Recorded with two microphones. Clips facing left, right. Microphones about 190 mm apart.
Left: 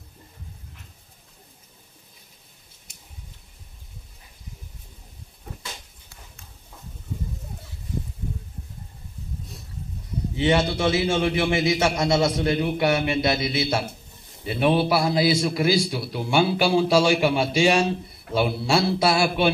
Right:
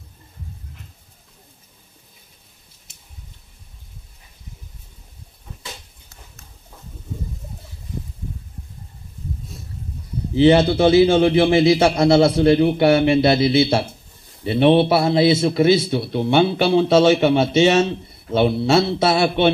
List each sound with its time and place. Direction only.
10.3 s a man's voice: 30° right (ahead or behind)